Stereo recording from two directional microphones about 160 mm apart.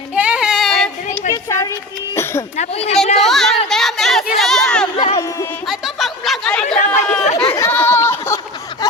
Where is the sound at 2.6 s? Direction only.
40° left (ahead or behind).